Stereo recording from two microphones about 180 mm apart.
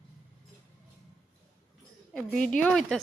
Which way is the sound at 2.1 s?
5° left (ahead or behind).